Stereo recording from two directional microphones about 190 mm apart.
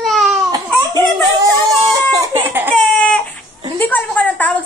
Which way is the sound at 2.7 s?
5° left (ahead or behind).